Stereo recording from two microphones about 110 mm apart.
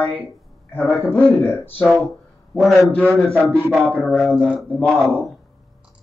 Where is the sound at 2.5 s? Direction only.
Centre (ahead or behind).